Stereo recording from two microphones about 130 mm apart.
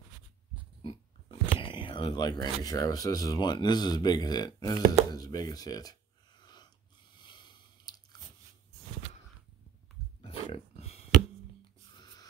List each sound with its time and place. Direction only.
1.4 s a sound: 40° left (ahead or behind)
2.6 s speech: 30° left (ahead or behind)
4.7 s speech: 50° right (ahead or behind)
5.1 s a sound: 30° left (ahead or behind)
7.2 s biting: 35° left (ahead or behind)
10.3 s dog: 50° left (ahead or behind)
12.0 s wheeze: 30° left (ahead or behind)